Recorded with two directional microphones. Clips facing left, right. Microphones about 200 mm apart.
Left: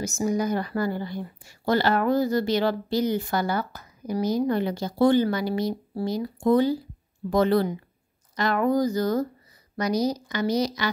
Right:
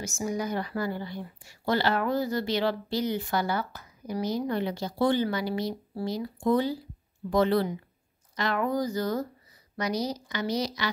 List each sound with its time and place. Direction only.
0.0 s a woman's voice: 40° left (ahead or behind)